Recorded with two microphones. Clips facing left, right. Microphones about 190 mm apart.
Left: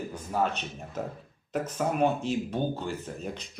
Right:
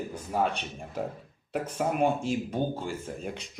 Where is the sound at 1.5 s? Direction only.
10° right (ahead or behind).